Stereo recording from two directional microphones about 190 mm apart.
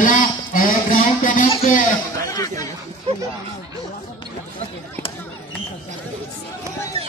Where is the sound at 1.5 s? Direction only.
30° left (ahead or behind).